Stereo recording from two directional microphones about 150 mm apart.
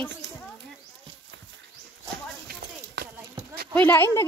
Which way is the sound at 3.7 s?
15° left (ahead or behind).